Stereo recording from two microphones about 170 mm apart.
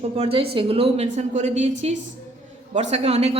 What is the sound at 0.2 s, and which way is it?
A woman's voice, 35° right (ahead or behind).